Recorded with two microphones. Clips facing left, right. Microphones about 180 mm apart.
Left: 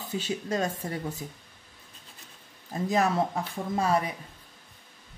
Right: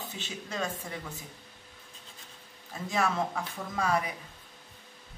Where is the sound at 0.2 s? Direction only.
40° left (ahead or behind).